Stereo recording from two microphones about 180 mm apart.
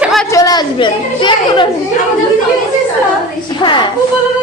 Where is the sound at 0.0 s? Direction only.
Centre (ahead or behind).